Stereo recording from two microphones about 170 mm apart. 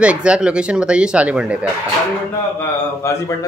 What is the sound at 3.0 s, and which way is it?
Speech, 15° left (ahead or behind).